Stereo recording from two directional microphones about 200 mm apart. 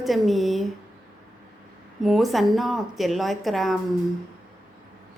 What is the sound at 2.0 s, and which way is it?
A woman's voice, centre (ahead or behind).